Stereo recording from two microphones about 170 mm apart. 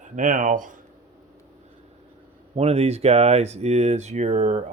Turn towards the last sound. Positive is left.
turn(degrees=-45)  # may be behind; listen again after turning